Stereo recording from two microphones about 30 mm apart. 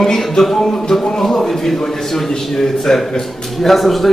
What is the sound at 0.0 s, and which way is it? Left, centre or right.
A man's voice, centre.